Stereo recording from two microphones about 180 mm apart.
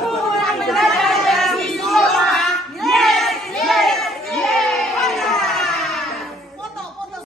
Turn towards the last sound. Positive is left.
turn(degrees=0)  # may be behind; listen again after turning